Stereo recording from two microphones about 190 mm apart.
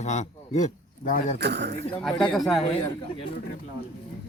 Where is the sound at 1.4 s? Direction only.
60° right (ahead or behind).